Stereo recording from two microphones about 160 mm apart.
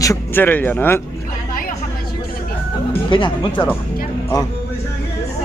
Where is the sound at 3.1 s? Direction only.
30° left (ahead or behind).